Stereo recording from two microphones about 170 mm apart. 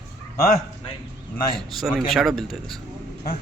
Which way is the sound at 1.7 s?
Centre (ahead or behind).